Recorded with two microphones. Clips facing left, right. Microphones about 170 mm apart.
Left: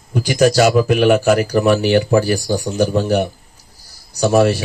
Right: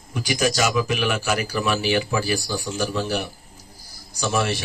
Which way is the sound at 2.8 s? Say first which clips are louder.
Left 8 dB; 60° left (ahead or behind).